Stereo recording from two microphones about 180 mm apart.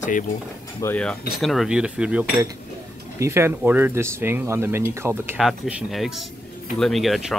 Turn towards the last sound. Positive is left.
turn(degrees=0)  # may be behind; listen again after turning